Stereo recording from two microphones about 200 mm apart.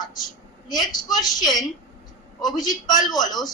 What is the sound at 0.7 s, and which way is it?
A woman's voice, 20° left (ahead or behind).